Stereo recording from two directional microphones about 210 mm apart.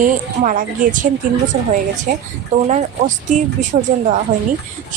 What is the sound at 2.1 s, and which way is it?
Speech, 40° right (ahead or behind).